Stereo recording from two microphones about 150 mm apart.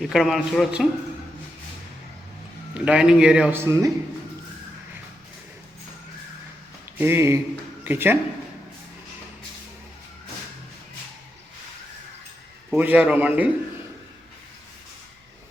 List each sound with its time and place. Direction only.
0.0 s a man's voice: centre (ahead or behind)
2.7 s a man's voice: 5° right (ahead or behind)
3.6 s a man's voice: 20° right (ahead or behind)
7.0 s a man's voice: 15° right (ahead or behind)
12.7 s a man's voice: 10° right (ahead or behind)